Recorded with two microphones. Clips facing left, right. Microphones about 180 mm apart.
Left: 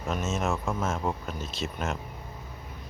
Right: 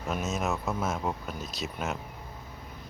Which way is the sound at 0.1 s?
5° right (ahead or behind).